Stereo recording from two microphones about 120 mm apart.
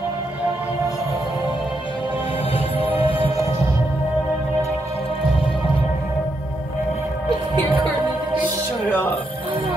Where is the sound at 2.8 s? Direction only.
50° left (ahead or behind).